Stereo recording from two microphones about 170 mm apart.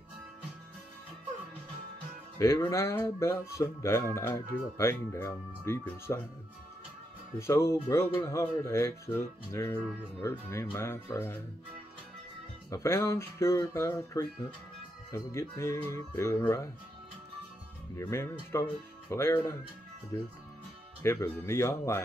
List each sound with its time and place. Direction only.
2.3 s speech: 20° left (ahead or behind)
7.3 s speech: 15° left (ahead or behind)
12.6 s speech: 15° left (ahead or behind)
17.9 s speech: 15° left (ahead or behind)